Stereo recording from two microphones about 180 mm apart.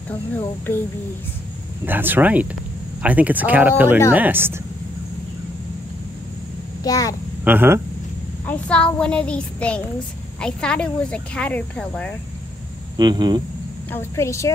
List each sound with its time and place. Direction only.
0.1 s speech: 10° left (ahead or behind)
1.9 s speech: 10° right (ahead or behind)
6.8 s a child's voice: 20° left (ahead or behind)
7.4 s speech: 10° right (ahead or behind)
8.5 s speech: 5° left (ahead or behind)
12.9 s speech: 25° right (ahead or behind)
13.9 s speech: 15° left (ahead or behind)